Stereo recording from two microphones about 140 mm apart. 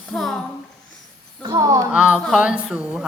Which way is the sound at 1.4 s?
30° right (ahead or behind).